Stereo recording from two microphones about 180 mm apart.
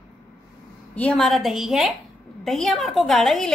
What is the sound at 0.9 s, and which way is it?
A woman's voice, 5° left (ahead or behind).